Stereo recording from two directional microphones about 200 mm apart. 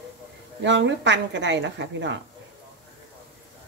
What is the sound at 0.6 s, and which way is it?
A woman's voice, 65° right (ahead or behind).